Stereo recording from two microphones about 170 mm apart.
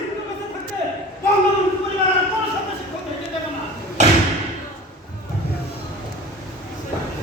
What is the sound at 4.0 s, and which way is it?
Thump, 45° right (ahead or behind).